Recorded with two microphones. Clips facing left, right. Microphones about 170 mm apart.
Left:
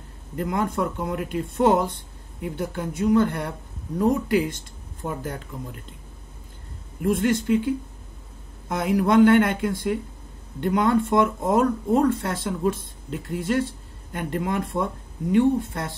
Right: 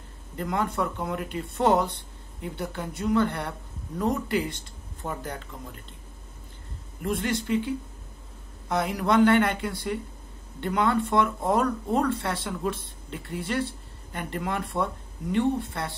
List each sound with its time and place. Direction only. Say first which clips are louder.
0.4 s speech: left 3 dB; 45° left (ahead or behind)
7.1 s speech: left 6 dB; 50° left (ahead or behind)